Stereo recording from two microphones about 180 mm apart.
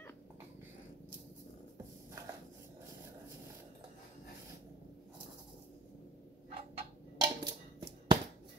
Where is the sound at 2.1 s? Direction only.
15° right (ahead or behind).